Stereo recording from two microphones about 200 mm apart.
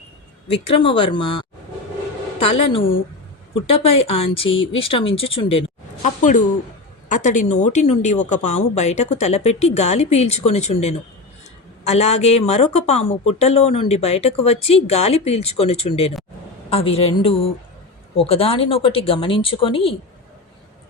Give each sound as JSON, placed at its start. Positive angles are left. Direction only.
{"t": 0.4, "sound": "speech", "side_deg": 30}
{"t": 4.4, "sound": "speech", "side_deg": 75}
{"t": 4.7, "sound": "speech", "side_deg": 25}